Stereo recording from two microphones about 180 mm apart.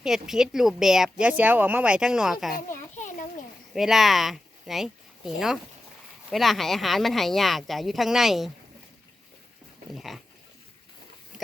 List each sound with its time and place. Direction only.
0.0 s speech: 5° right (ahead or behind)
2.6 s children playing: 45° left (ahead or behind)
3.8 s speech: centre (ahead or behind)
9.9 s speech: centre (ahead or behind)